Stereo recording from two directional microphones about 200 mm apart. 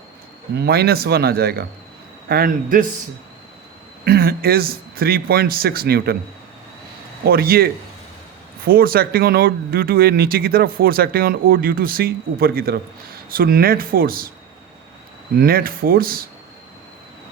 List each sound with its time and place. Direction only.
0.5 s speech: 55° right (ahead or behind)
4.0 s speech: 50° right (ahead or behind)
7.3 s speech: 50° right (ahead or behind)
15.4 s speech: 50° right (ahead or behind)